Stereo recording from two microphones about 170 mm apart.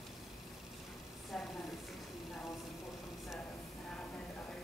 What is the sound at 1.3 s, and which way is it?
Speech, 5° left (ahead or behind).